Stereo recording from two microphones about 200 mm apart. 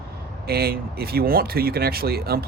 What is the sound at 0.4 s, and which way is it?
Speech, 50° right (ahead or behind).